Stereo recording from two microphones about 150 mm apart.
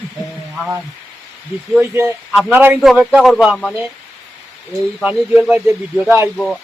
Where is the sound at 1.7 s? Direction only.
15° right (ahead or behind).